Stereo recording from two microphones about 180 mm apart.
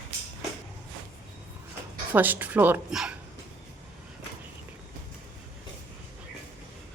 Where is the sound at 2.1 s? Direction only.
10° right (ahead or behind).